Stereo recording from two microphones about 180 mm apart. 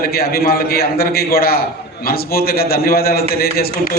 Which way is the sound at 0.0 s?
55° left (ahead or behind).